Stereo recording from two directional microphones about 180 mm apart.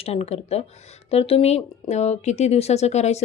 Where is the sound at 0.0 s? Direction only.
35° left (ahead or behind).